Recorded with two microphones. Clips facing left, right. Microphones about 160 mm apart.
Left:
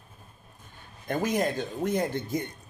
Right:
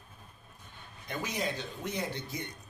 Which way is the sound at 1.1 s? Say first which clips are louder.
Left 8 dB; 50° left (ahead or behind).